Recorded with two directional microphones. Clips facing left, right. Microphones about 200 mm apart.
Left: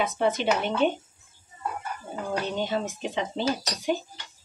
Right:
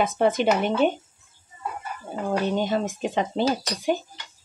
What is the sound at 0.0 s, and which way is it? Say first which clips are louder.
Speech: right 4 dB; 50° right (ahead or behind).